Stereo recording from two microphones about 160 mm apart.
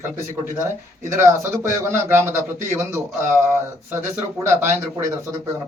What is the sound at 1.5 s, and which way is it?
Speech, 15° right (ahead or behind).